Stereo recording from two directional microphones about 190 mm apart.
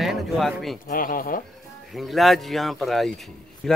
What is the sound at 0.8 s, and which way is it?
Speech, 45° left (ahead or behind).